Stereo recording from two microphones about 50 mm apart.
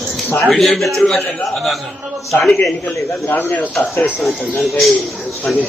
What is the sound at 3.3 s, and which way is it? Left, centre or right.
Speech, left.